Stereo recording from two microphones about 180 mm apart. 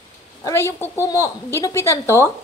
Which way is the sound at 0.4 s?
15° left (ahead or behind).